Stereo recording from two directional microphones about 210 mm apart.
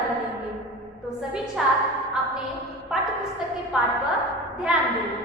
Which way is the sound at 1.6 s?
Centre (ahead or behind).